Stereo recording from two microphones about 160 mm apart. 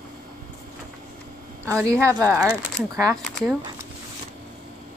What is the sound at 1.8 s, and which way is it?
Speech, 20° right (ahead or behind).